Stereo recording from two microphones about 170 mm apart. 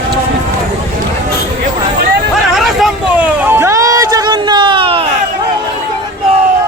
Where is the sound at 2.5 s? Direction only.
Centre (ahead or behind); by 5.0 s 30° right (ahead or behind).